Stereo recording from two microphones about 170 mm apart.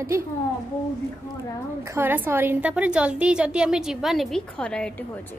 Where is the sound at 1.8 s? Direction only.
15° right (ahead or behind); by 5.4 s 10° left (ahead or behind).